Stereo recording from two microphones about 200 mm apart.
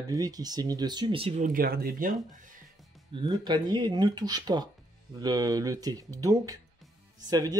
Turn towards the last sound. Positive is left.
turn(degrees=-20)  # may be behind; listen again after turning